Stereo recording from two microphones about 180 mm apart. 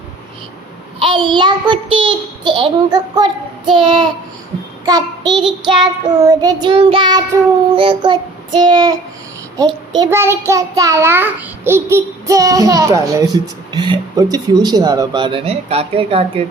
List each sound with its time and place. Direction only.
0.9 s child singing: 30° right (ahead or behind)